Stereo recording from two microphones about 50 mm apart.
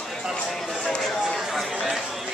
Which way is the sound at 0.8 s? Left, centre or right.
Centre.